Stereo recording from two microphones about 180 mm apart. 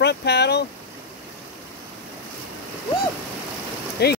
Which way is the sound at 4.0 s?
65° left (ahead or behind).